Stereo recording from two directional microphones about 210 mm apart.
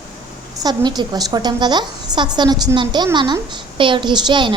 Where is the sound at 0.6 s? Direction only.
20° right (ahead or behind).